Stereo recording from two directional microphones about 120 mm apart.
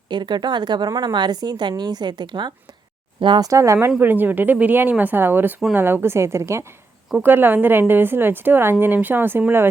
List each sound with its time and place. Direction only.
0.1 s speech: 40° right (ahead or behind)
3.5 s a woman's voice: 25° right (ahead or behind)